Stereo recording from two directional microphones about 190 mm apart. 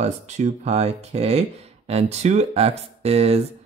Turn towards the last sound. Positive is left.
turn(degrees=-35)  # may be behind; listen again after turning